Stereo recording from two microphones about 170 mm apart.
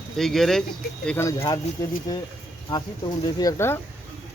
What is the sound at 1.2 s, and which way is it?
Speech, 20° left (ahead or behind).